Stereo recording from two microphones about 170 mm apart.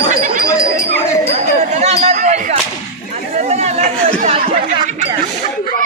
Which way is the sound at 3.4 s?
40° right (ahead or behind).